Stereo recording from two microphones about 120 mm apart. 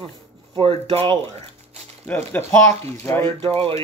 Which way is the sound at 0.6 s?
55° right (ahead or behind).